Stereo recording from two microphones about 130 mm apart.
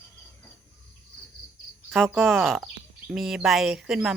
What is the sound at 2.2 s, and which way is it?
Speech, centre (ahead or behind).